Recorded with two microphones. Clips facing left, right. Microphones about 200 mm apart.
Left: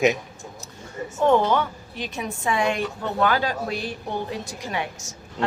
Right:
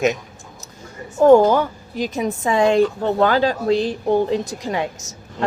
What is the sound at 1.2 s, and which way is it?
Speech, 40° right (ahead or behind).